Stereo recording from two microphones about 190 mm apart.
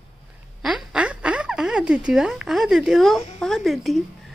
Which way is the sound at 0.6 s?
5° right (ahead or behind).